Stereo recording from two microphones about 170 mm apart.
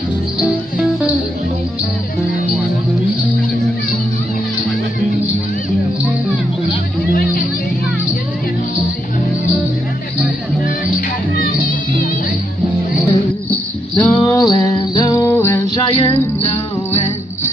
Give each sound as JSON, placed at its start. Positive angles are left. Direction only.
{"t": 0.4, "sound": "music", "side_deg": -5}
{"t": 13.5, "sound": "music", "side_deg": 10}
{"t": 16.0, "sound": "music", "side_deg": 35}